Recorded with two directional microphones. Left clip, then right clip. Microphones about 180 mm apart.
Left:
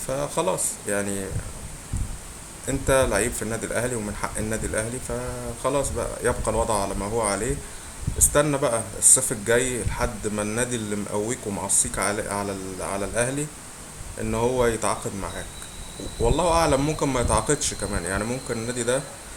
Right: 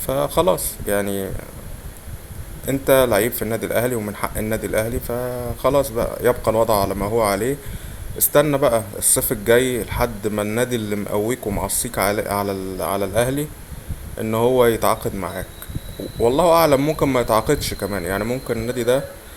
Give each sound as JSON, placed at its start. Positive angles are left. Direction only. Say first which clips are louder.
{"t": 0.1, "sound": "a man's voice", "louder": "right 7 dB", "side_deg": -25}
{"t": 2.6, "sound": "a man's voice", "louder": "right 6 dB", "side_deg": -25}